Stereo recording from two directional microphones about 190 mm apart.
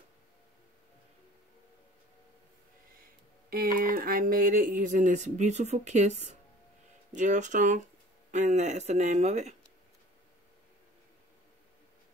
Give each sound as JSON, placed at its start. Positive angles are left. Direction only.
{"t": 3.8, "sound": "speech", "side_deg": -50}